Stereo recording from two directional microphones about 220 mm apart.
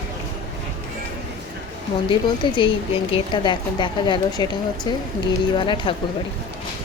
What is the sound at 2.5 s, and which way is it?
Speech, 25° left (ahead or behind).